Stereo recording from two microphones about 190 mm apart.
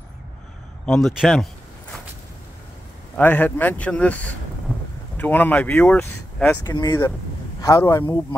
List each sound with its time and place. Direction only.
0.8 s a man's voice: centre (ahead or behind)
3.2 s speech: 10° left (ahead or behind)